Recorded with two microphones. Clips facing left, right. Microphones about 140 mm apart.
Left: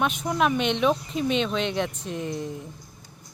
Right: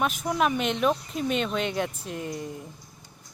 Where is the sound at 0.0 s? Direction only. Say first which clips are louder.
Left 1 dB; centre (ahead or behind).